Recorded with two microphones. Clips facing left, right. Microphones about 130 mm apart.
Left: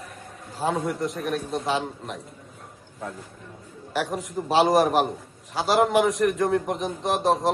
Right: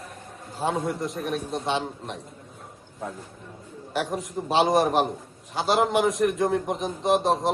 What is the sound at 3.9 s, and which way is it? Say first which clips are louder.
A man's voice: left 1 dB; centre (ahead or behind).